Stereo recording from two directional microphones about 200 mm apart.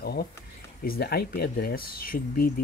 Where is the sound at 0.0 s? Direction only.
50° left (ahead or behind).